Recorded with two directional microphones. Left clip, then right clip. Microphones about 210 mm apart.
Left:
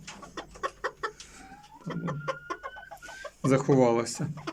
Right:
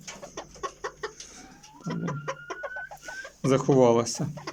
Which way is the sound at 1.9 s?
5° left (ahead or behind).